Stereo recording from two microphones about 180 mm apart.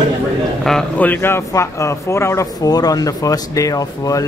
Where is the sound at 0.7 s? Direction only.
5° left (ahead or behind).